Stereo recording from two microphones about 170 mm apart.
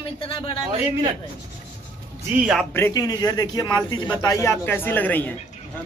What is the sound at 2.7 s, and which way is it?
A man's voice, 20° left (ahead or behind).